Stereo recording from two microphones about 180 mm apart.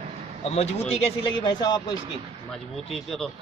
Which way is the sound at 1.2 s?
25° left (ahead or behind).